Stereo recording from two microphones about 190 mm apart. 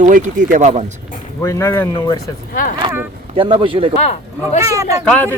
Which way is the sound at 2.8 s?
25° right (ahead or behind).